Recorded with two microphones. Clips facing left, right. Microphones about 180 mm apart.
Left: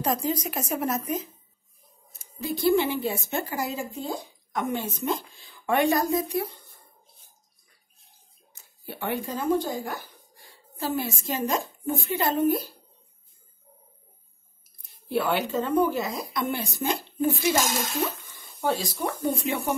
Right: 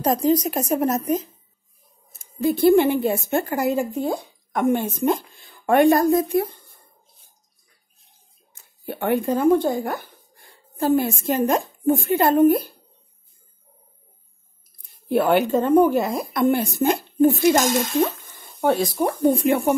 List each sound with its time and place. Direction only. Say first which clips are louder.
0.0 s a woman's voice: right 8 dB; 40° right (ahead or behind)
2.3 s speech: right 7 dB; 55° right (ahead or behind)
8.8 s speech: right 9 dB; 50° right (ahead or behind)
15.0 s speech: right 8 dB; 50° right (ahead or behind)